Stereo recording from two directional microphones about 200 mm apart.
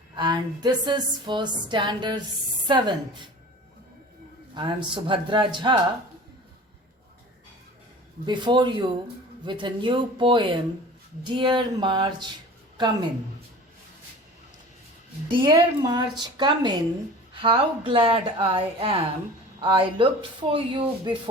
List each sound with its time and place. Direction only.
0.2 s a woman's voice: 20° right (ahead or behind)
4.5 s a woman's voice: 25° right (ahead or behind)
8.3 s a woman's voice: 25° right (ahead or behind)
15.3 s a woman's voice: 25° right (ahead or behind)